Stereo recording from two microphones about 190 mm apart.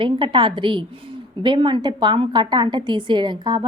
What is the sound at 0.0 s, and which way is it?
A woman's voice, 25° right (ahead or behind).